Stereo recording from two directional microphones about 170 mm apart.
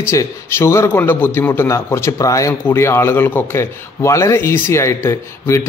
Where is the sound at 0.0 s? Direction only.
15° left (ahead or behind).